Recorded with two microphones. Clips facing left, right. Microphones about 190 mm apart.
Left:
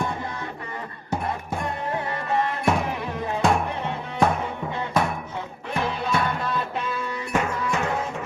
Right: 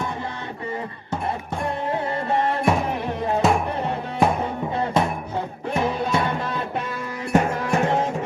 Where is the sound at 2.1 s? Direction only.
30° right (ahead or behind).